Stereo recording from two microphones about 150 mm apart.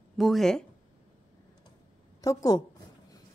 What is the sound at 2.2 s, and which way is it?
Speech, 25° left (ahead or behind).